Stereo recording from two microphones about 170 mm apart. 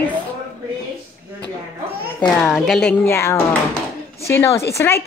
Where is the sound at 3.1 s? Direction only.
15° left (ahead or behind).